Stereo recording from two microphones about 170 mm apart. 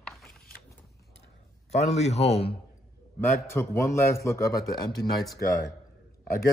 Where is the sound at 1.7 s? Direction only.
40° left (ahead or behind).